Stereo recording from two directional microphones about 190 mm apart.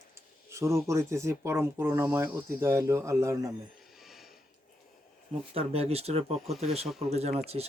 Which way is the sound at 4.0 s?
Centre (ahead or behind).